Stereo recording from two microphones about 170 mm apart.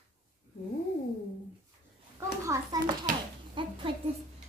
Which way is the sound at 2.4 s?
15° right (ahead or behind).